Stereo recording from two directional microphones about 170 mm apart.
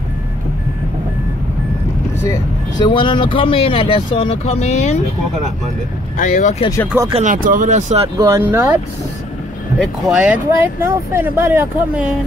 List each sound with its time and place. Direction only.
2.1 s speech: 20° left (ahead or behind); by 4.9 s 40° left (ahead or behind)
6.1 s speech: 45° left (ahead or behind)
6.9 s speech: 15° right (ahead or behind)
7.2 s speech: 50° right (ahead or behind)
8.2 s speech: 15° right (ahead or behind)
9.8 s speech: 5° right (ahead or behind)